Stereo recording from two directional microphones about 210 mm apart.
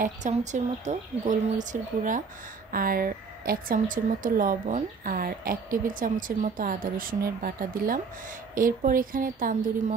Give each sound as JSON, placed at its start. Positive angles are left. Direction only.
{"t": 0.0, "sound": "a woman's voice", "side_deg": -35}